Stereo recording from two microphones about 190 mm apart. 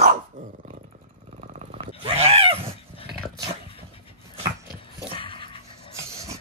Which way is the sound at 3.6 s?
30° left (ahead or behind).